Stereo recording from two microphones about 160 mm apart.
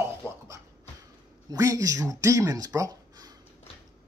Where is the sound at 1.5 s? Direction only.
20° right (ahead or behind).